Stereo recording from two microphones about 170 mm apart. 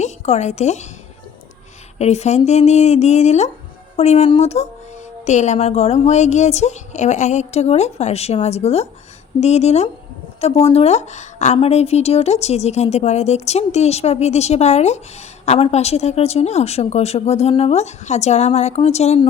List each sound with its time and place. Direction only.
0.0 s a woman's voice: 40° left (ahead or behind)
2.0 s a woman's voice: 40° left (ahead or behind)